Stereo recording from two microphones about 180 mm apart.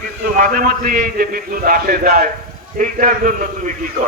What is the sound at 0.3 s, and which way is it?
A man's voice, 50° right (ahead or behind).